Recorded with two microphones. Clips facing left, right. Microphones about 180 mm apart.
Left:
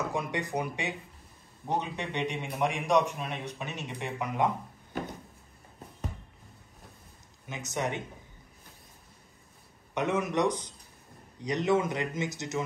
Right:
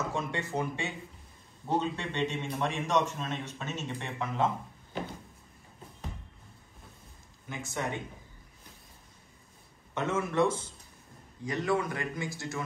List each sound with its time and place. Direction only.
0.1 s a man's voice: 15° left (ahead or behind)
7.4 s a man's voice: 20° left (ahead or behind)
9.9 s a man's voice: 15° left (ahead or behind)